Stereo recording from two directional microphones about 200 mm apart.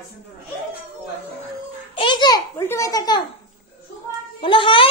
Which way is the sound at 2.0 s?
25° left (ahead or behind).